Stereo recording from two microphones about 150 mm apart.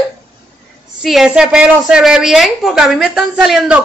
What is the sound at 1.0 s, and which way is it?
A woman's voice, 5° right (ahead or behind).